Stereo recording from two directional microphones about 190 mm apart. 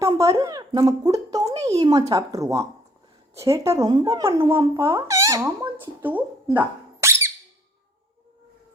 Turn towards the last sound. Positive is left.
turn(degrees=-15)  # may be behind; listen again after turning